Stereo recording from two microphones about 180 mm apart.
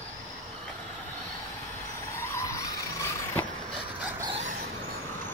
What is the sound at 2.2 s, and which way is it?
Vehicle, 15° left (ahead or behind).